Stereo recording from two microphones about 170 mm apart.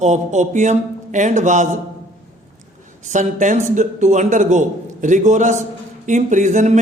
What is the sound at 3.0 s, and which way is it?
Speech, 45° right (ahead or behind).